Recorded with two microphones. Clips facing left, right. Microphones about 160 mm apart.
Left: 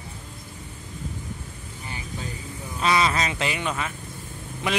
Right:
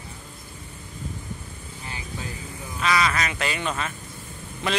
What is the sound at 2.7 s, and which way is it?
Speech, 25° left (ahead or behind).